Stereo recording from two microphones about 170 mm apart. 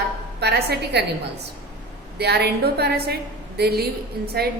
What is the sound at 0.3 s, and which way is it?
Speech, 75° right (ahead or behind).